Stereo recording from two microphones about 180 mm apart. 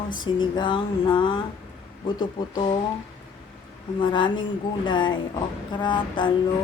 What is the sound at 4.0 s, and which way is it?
Speech, 25° left (ahead or behind).